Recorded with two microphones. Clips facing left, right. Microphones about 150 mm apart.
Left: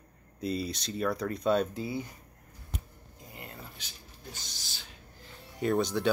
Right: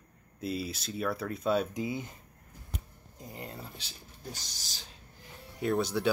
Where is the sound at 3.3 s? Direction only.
35° right (ahead or behind).